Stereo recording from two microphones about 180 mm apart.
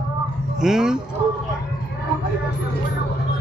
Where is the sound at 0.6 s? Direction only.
5° right (ahead or behind).